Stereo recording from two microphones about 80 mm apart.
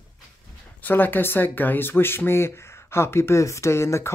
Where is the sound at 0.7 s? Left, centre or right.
Left.